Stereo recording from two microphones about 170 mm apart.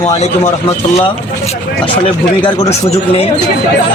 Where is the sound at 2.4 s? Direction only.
35° left (ahead or behind).